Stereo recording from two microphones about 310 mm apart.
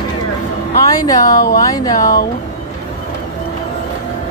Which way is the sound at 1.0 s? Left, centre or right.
Centre.